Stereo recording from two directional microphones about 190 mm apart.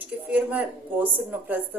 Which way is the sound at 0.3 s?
10° right (ahead or behind).